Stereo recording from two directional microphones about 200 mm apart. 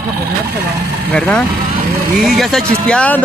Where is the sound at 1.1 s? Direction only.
5° left (ahead or behind).